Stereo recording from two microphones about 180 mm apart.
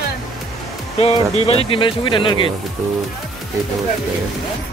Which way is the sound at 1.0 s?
30° left (ahead or behind).